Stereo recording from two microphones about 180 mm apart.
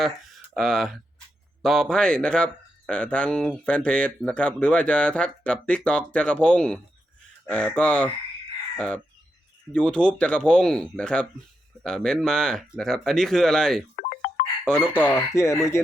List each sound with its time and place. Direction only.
0.0 s speech: centre (ahead or behind)
9.7 s speech: 5° left (ahead or behind)
13.9 s music: 55° left (ahead or behind)
14.6 s speech: 5° left (ahead or behind)